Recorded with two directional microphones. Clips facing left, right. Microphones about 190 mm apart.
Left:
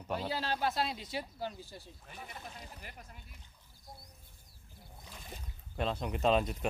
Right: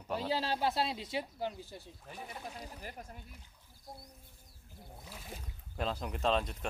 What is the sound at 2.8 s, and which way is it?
Speech, 40° right (ahead or behind).